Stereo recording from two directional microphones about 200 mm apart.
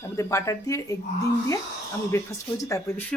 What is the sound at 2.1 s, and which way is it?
Speech, 15° left (ahead or behind).